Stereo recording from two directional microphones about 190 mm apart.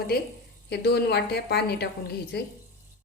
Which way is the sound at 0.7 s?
60° left (ahead or behind).